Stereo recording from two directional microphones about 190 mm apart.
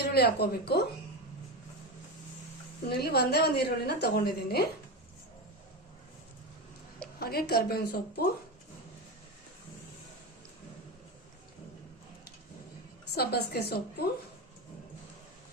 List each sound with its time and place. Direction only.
0.0 s a woman's voice: 55° left (ahead or behind)
2.9 s a woman's voice: 55° left (ahead or behind)
7.2 s a woman's voice: 55° left (ahead or behind)
13.1 s a woman's voice: 55° left (ahead or behind)